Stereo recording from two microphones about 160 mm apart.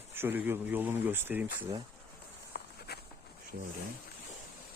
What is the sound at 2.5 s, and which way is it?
Insect, 80° left.